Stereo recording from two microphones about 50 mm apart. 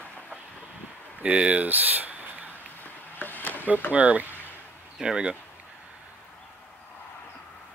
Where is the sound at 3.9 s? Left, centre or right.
Right.